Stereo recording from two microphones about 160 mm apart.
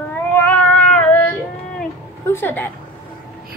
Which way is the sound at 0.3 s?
10° left (ahead or behind).